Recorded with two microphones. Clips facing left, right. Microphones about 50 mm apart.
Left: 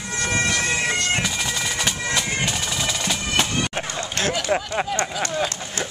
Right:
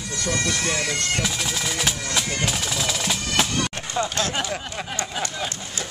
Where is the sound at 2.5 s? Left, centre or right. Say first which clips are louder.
Even; centre.